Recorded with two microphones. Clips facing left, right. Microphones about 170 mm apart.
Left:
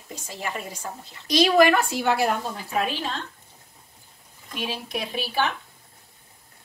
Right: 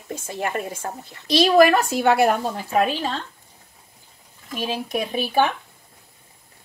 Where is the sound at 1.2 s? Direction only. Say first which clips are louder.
Right 3 dB; 30° right (ahead or behind).